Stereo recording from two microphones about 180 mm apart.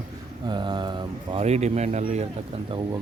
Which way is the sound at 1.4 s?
35° right (ahead or behind).